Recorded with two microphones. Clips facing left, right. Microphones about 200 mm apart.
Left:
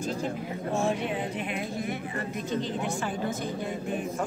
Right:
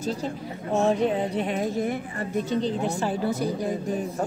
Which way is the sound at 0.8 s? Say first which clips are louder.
Right 6 dB; 35° right (ahead or behind).